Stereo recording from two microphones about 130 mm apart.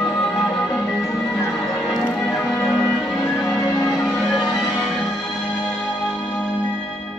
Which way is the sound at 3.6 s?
30° left (ahead or behind).